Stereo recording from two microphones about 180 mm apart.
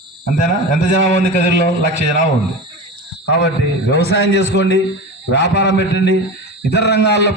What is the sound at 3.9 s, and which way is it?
A man's voice, 65° left (ahead or behind).